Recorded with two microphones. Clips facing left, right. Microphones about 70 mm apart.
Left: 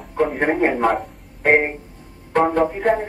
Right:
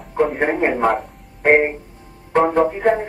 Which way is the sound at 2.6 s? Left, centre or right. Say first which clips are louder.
Right 2 dB; centre.